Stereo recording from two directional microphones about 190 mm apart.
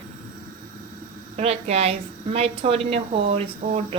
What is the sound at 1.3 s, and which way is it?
A woman's voice, 35° right (ahead or behind).